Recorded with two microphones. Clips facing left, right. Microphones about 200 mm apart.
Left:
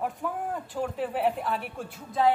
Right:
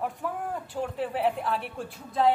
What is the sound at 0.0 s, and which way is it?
Speech, centre (ahead or behind).